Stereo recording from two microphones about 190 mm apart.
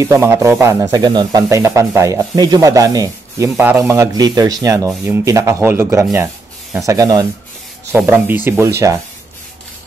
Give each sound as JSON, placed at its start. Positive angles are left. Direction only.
{"t": 0.0, "sound": "speech", "side_deg": -15}